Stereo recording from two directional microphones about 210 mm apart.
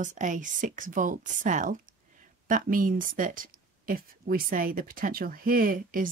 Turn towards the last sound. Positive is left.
turn(degrees=-40)  # may be behind; listen again after turning